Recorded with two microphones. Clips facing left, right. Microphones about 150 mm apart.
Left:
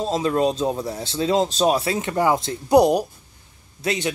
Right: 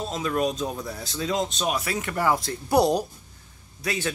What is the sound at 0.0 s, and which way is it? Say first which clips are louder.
Speech: left 5 dB; 30° left (ahead or behind).